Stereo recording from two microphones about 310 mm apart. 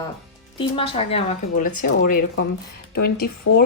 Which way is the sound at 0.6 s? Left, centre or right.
Centre.